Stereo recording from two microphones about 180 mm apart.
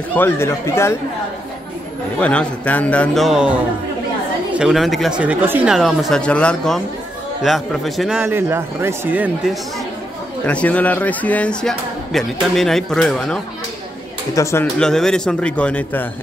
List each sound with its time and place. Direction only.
0.1 s speech: 10° left (ahead or behind)
2.1 s a man's voice: 5° left (ahead or behind); by 5.8 s 10° right (ahead or behind)
5.8 s a man's voice: centre (ahead or behind)
10.4 s speech: 5° left (ahead or behind)
14.3 s speech: 15° left (ahead or behind)
14.8 s a man's voice: 5° left (ahead or behind)